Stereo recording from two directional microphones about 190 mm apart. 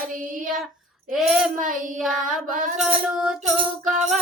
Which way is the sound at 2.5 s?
45° right (ahead or behind).